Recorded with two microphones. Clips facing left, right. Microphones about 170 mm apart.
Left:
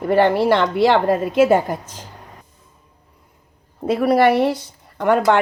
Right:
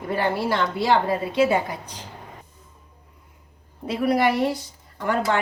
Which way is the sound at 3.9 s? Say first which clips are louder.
Left 6 dB; 65° left (ahead or behind).